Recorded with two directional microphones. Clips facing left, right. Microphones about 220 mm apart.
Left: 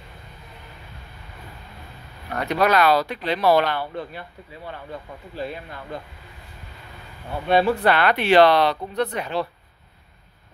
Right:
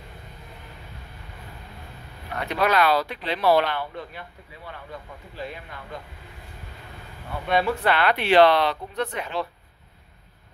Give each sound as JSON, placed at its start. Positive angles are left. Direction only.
{"t": 2.4, "sound": "speech", "side_deg": 40}
{"t": 7.4, "sound": "speech", "side_deg": 30}